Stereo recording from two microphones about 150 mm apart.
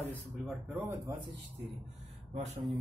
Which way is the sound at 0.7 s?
15° right (ahead or behind).